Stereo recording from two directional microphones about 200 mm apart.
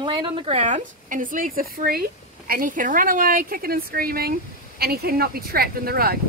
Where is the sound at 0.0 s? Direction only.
30° right (ahead or behind).